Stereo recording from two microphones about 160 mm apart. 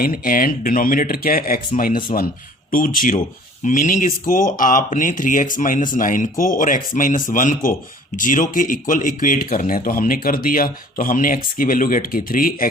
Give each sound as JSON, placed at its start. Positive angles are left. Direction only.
{"t": 0.0, "sound": "speech", "side_deg": 60}